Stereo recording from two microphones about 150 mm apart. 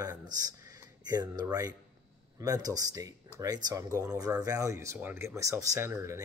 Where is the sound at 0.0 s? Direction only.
25° right (ahead or behind).